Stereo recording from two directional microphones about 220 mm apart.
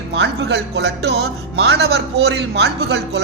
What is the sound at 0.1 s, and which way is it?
Speech, 50° right (ahead or behind).